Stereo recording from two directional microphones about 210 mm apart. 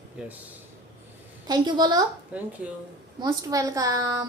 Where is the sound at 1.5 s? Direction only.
20° right (ahead or behind).